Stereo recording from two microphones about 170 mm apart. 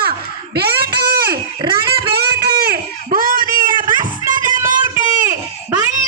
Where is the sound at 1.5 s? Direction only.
25° right (ahead or behind).